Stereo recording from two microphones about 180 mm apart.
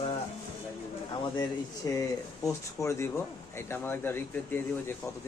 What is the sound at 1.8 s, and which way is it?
Speech, 20° left (ahead or behind).